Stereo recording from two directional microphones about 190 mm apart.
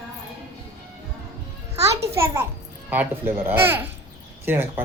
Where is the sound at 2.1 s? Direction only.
15° right (ahead or behind).